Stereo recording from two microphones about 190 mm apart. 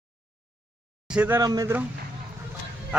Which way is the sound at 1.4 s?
20° right (ahead or behind).